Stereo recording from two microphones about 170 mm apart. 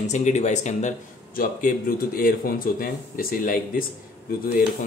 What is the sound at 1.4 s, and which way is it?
Speech, 55° left (ahead or behind).